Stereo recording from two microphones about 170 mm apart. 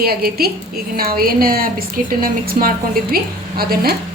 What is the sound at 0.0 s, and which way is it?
A woman's voice, 65° right (ahead or behind).